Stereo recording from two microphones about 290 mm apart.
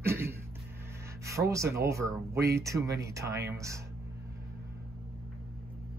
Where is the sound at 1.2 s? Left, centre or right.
Centre.